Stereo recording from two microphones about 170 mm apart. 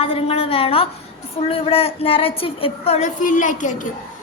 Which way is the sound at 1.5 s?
35° left (ahead or behind).